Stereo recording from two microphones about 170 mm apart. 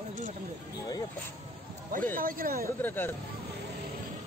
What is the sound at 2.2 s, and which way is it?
Speech, 55° right (ahead or behind).